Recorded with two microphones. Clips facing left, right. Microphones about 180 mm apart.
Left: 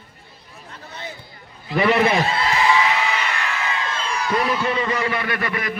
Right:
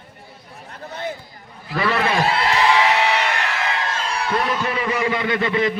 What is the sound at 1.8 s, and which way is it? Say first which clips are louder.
Speech: left 3 dB; 20° left (ahead or behind).